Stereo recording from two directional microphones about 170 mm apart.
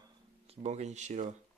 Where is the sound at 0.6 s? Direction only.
40° right (ahead or behind).